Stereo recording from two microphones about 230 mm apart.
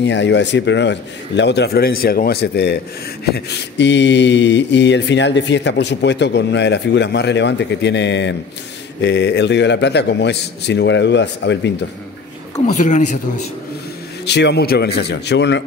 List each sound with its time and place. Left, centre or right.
0.0 s mantra: left
12.6 s speech: left
14.2 s mantra: left